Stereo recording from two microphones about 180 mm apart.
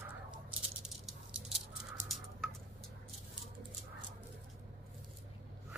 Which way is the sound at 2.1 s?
Centre (ahead or behind).